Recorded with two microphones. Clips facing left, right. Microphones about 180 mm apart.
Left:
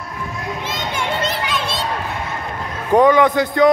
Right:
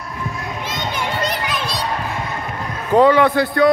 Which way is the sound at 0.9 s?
25° left (ahead or behind).